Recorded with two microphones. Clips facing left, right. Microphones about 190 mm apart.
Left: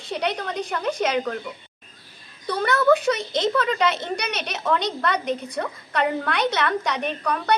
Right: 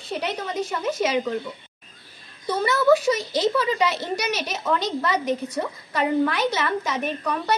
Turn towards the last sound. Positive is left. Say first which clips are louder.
# left 1 dB
turn(degrees=-5)  # may be behind; listen again after turning